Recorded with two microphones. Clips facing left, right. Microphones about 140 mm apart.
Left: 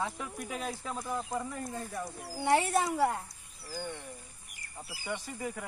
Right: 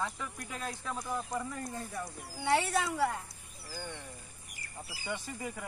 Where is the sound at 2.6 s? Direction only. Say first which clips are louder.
Left 3 dB; 20° left (ahead or behind).